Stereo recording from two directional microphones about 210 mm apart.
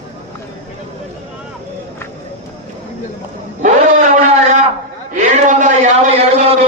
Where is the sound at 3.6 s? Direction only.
35° right (ahead or behind).